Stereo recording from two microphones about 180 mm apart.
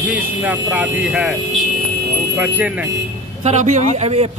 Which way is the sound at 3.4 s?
40° right (ahead or behind).